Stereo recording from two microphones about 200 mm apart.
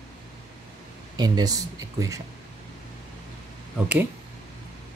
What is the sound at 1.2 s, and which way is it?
Speech, 20° right (ahead or behind).